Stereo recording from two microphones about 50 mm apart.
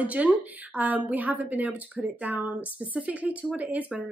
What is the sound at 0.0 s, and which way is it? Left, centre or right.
A woman's voice, right.